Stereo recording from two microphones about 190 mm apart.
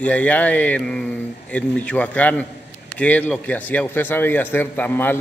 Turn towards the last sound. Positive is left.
turn(degrees=10)  # may be behind; listen again after turning